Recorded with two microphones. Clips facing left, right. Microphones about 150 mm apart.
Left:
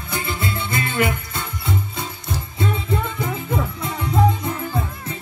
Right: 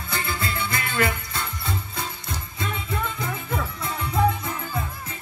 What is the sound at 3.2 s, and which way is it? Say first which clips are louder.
Music: left 5 dB; 20° left (ahead or behind).